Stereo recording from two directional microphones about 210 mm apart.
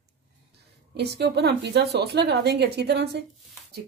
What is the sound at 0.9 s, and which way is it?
A woman's voice, 50° right (ahead or behind).